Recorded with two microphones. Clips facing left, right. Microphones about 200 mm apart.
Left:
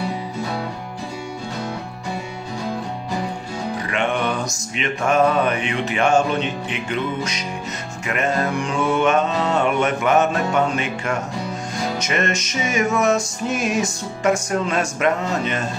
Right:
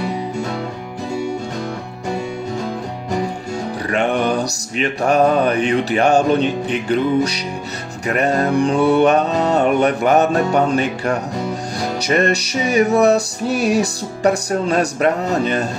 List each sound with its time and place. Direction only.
3.9 s music: 35° right (ahead or behind)